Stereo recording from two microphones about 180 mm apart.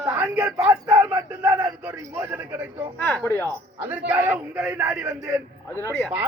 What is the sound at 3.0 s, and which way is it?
Speech, 15° left (ahead or behind).